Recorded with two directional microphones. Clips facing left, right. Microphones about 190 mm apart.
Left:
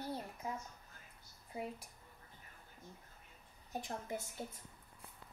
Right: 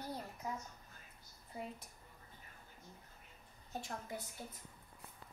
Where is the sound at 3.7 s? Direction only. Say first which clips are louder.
Left 2 dB; 20° left (ahead or behind).